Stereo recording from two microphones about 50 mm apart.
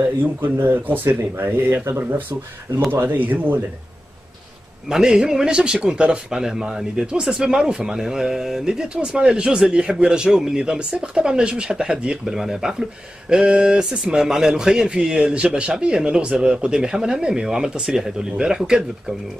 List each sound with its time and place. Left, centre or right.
0.0 s speech: right
4.8 s a man's voice: centre